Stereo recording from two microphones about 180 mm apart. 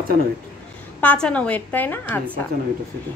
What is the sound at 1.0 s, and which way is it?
A woman's voice, 5° left (ahead or behind).